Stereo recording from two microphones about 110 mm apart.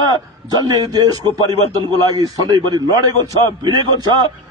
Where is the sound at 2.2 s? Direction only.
35° right (ahead or behind).